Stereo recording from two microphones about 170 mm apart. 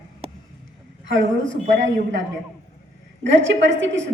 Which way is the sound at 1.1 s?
90° right.